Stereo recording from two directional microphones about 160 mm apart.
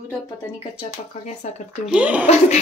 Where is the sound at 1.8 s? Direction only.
5° right (ahead or behind).